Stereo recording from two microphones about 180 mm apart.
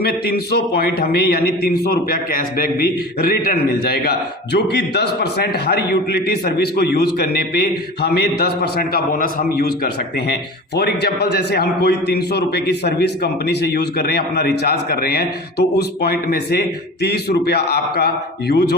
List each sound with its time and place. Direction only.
0.0 s a man's voice: 60° left (ahead or behind)